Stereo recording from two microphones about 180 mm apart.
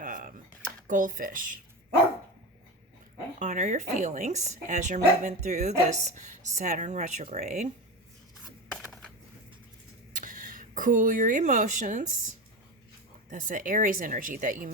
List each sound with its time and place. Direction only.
0.0 s a sound: 50° right (ahead or behind)
0.9 s a woman's voice: 50° right (ahead or behind)
3.3 s speech: 45° right (ahead or behind)
8.7 s a sound: 5° left (ahead or behind)
10.1 s speech: 45° right (ahead or behind)
13.3 s a woman's voice: 45° right (ahead or behind)